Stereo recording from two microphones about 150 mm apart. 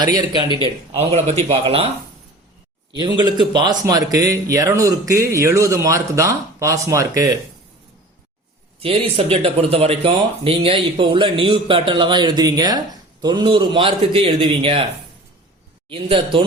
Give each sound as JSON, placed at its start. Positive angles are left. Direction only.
{"t": 0.0, "sound": "speech", "side_deg": -30}
{"t": 0.6, "sound": "speech", "side_deg": -45}
{"t": 2.9, "sound": "speech", "side_deg": -30}
{"t": 8.8, "sound": "speech", "side_deg": -40}
{"t": 15.9, "sound": "speech", "side_deg": -35}